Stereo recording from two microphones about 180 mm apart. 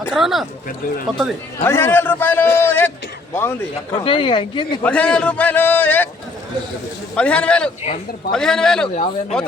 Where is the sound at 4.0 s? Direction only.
30° left (ahead or behind).